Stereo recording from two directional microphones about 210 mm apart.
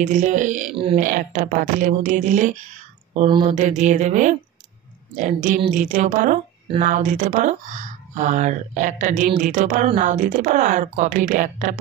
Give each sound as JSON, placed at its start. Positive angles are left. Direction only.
{"t": 0.0, "sound": "speech", "side_deg": -35}
{"t": 3.2, "sound": "speech", "side_deg": -25}